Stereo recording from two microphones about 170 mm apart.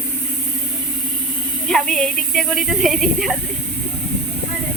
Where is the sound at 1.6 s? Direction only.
Centre (ahead or behind).